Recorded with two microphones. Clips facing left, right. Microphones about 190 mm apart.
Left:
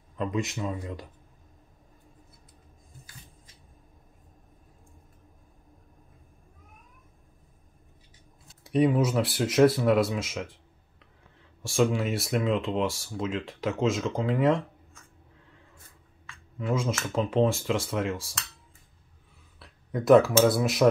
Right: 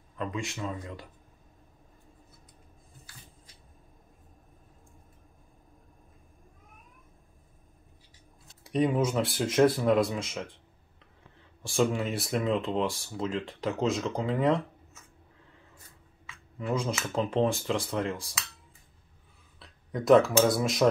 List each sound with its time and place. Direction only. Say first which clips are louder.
0.2 s speech: left 4 dB; 20° left (ahead or behind)
8.6 s speech: left 3 dB; centre (ahead or behind)
11.6 s speech: left 2 dB; centre (ahead or behind)
16.5 s speech: left 2 dB; centre (ahead or behind)
19.6 s a sound: left 2 dB; 5° left (ahead or behind)
20.4 s speech: left 3 dB; 5° left (ahead or behind)